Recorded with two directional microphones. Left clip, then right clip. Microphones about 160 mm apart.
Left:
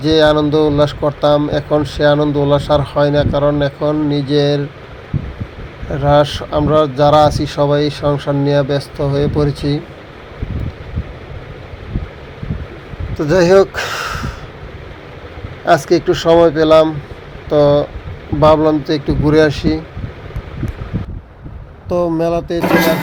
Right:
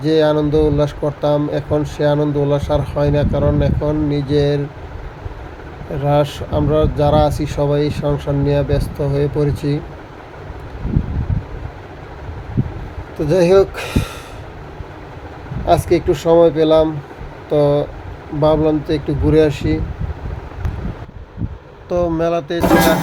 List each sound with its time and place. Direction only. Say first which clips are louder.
0.0 s speech: left 3 dB; 10° left (ahead or behind)
6.0 s speech: left 5 dB; 10° left (ahead or behind)
13.1 s speech: left 2 dB; 10° left (ahead or behind)
15.9 s speech: left 2 dB; 5° left (ahead or behind)
22.1 s speech: left 2 dB; 15° left (ahead or behind)